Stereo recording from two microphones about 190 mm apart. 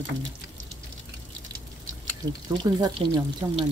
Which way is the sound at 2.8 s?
25° right (ahead or behind).